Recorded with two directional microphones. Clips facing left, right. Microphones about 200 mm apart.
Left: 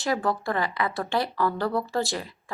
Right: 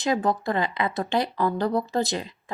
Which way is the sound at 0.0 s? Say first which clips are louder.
Right 2 dB; 20° right (ahead or behind).